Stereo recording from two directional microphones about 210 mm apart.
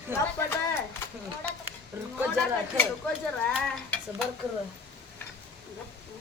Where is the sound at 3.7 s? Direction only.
5° left (ahead or behind).